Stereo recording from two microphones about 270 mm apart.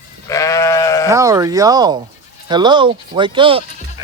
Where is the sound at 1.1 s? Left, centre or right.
Centre.